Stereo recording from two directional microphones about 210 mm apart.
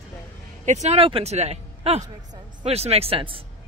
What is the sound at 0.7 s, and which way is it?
A man's voice, 30° right (ahead or behind).